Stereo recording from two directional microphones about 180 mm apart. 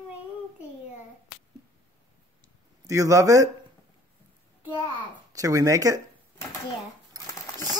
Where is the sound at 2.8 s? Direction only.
20° right (ahead or behind).